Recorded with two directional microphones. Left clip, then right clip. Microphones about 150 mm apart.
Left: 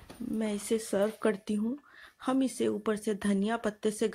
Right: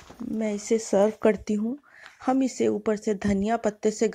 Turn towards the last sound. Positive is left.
turn(degrees=-15)  # may be behind; listen again after turning